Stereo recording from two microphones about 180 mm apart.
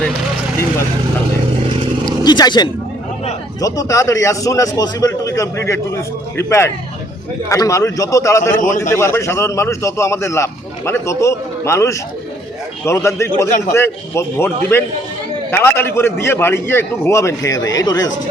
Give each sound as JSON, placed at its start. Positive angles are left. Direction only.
{"t": 2.0, "sound": "a man's voice", "side_deg": 25}